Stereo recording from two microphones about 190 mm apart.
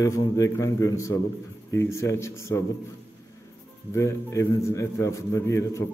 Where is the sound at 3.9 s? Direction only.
15° left (ahead or behind).